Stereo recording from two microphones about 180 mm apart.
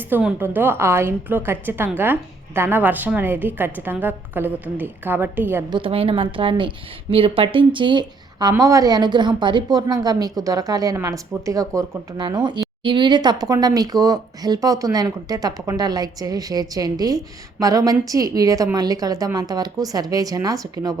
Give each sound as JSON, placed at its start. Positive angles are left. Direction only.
{"t": 0.1, "sound": "a woman's voice", "side_deg": -10}
{"t": 5.7, "sound": "a woman's voice", "side_deg": -30}